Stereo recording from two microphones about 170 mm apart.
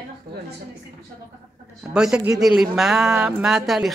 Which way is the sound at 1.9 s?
5° right (ahead or behind).